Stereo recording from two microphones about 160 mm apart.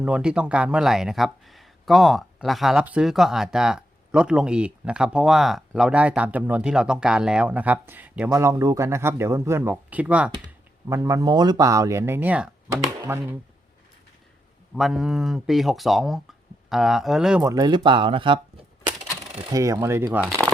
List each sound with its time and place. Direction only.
0.0 s speech: 5° right (ahead or behind)
10.8 s speech: 20° right (ahead or behind)
14.8 s speech: centre (ahead or behind)
17.4 s speech: 20° right (ahead or behind)
19.2 s coin: 35° right (ahead or behind)
19.5 s speech: 20° right (ahead or behind)